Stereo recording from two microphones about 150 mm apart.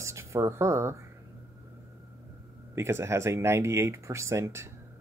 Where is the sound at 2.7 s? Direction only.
15° right (ahead or behind).